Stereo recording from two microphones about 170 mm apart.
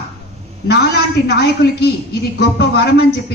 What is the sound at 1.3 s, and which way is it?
A woman's voice, 75° left (ahead or behind).